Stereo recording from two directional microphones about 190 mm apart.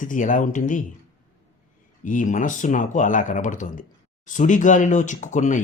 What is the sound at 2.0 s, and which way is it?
Speech, 45° left (ahead or behind).